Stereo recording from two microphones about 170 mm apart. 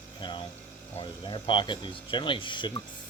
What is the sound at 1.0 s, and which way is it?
Speech, 25° left (ahead or behind).